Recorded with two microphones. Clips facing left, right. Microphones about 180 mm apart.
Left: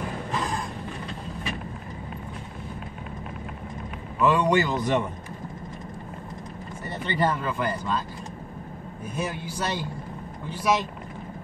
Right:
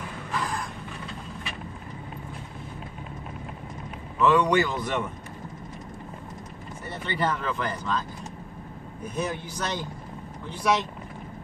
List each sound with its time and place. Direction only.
0.3 s a sound: 20° left (ahead or behind)
4.2 s speech: 15° left (ahead or behind)
7.1 s speech: 15° left (ahead or behind)
9.1 s speech: 10° left (ahead or behind)